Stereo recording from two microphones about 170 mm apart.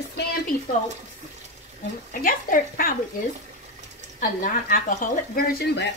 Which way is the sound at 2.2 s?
55° left (ahead or behind).